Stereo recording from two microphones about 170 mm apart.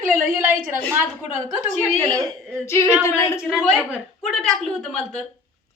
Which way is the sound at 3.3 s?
5° right (ahead or behind).